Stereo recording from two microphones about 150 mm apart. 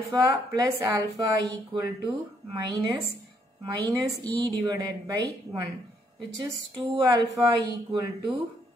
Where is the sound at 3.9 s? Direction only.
25° right (ahead or behind).